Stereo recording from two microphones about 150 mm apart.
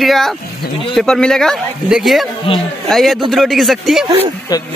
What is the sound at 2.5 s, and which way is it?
Speech, 35° left (ahead or behind).